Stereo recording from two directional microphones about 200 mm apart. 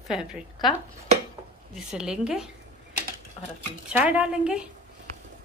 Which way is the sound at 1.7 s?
5° right (ahead or behind).